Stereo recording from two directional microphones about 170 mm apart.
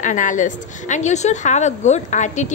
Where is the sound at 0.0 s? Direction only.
50° left (ahead or behind).